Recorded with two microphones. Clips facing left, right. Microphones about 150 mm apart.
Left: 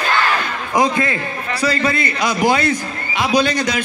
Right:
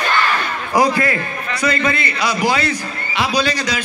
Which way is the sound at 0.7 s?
20° left (ahead or behind).